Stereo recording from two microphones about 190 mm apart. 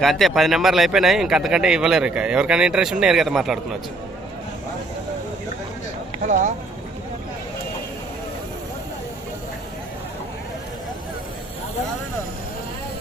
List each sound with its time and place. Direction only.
0.0 s speech: centre (ahead or behind)
6.2 s speech: 40° right (ahead or behind)